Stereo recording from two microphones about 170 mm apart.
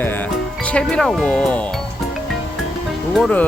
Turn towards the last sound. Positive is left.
turn(degrees=5)  # may be behind; listen again after turning